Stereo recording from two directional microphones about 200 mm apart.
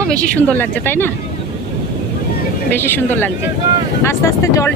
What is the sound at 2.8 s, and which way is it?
Speech, 10° left (ahead or behind).